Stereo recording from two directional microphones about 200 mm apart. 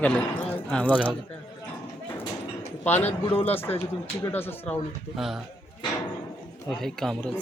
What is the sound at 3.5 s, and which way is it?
A man's voice, 10° left (ahead or behind).